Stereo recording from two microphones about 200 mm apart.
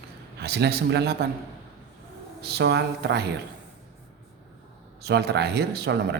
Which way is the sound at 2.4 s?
55° right (ahead or behind).